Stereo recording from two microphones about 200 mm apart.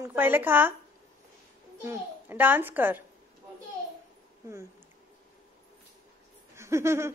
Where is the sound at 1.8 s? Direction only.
10° right (ahead or behind).